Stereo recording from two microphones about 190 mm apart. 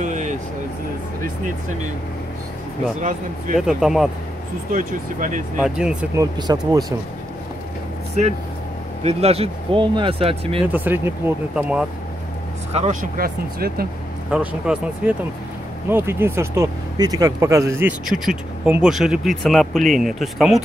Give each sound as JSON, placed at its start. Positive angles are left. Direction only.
{"t": 0.0, "sound": "a sound", "side_deg": -40}
{"t": 1.2, "sound": "speech", "side_deg": -40}
{"t": 3.0, "sound": "speech", "side_deg": -40}
{"t": 3.5, "sound": "speech", "side_deg": 0}
{"t": 4.7, "sound": "speech", "side_deg": -45}
{"t": 5.6, "sound": "speech", "side_deg": -5}
{"t": 6.1, "sound": "speech", "side_deg": -20}
{"t": 9.0, "sound": "speech", "side_deg": -30}
{"t": 10.7, "sound": "speech", "side_deg": -10}
{"t": 12.7, "sound": "speech", "side_deg": -35}
{"t": 13.2, "sound": "speech", "side_deg": -50}
{"t": 14.3, "sound": "speech", "side_deg": -5}
{"t": 18.0, "sound": "speech", "side_deg": 0}